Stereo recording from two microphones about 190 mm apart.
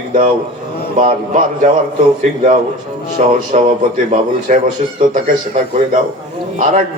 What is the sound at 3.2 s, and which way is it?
A man's voice, 40° right (ahead or behind).